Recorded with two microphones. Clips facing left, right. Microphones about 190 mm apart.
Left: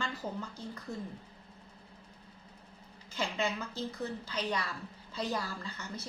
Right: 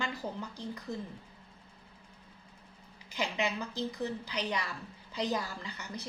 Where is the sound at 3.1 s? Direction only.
15° right (ahead or behind).